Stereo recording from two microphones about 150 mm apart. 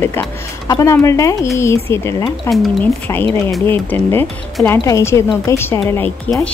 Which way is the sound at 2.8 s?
15° left (ahead or behind).